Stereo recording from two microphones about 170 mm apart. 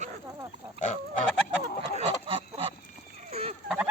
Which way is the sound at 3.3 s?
35° right (ahead or behind).